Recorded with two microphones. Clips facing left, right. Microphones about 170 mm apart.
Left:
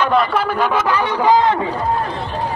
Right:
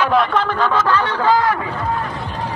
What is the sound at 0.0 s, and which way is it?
A man's voice, centre (ahead or behind).